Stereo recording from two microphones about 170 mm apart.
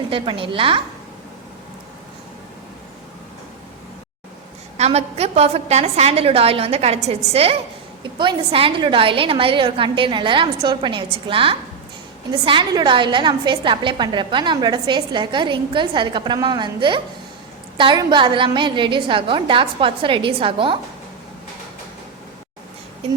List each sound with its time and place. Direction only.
0.1 s a woman's voice: 30° right (ahead or behind)
4.8 s a woman's voice: 40° right (ahead or behind)
8.2 s a woman's voice: 30° right (ahead or behind)
23.0 s speech: 35° right (ahead or behind)